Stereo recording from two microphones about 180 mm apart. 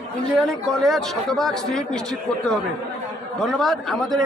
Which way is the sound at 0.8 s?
Centre (ahead or behind).